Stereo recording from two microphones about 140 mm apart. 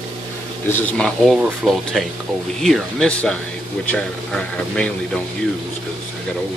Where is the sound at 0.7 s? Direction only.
15° left (ahead or behind).